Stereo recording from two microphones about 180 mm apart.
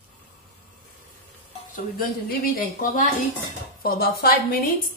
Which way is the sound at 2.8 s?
45° left (ahead or behind).